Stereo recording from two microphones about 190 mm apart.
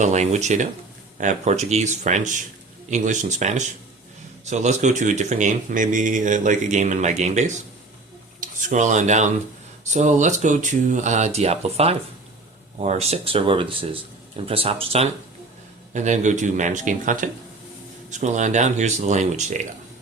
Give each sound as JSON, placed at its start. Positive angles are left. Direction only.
{"t": 0.0, "sound": "speech", "side_deg": -35}